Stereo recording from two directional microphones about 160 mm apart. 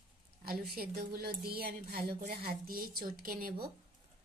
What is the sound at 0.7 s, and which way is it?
A woman's voice, 70° right (ahead or behind).